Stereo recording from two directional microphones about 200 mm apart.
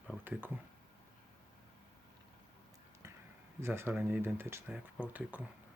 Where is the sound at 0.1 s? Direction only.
10° right (ahead or behind).